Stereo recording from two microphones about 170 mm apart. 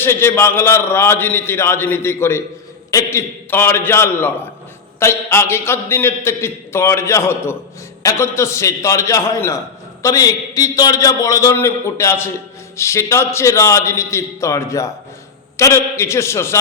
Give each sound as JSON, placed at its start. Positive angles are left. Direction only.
{"t": 0.0, "sound": "a man's voice", "side_deg": 15}